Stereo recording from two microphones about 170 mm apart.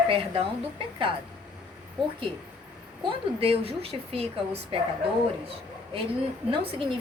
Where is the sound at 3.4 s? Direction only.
35° right (ahead or behind).